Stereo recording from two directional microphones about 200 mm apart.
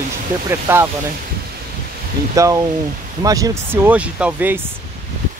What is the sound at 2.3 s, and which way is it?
Speech, 15° right (ahead or behind).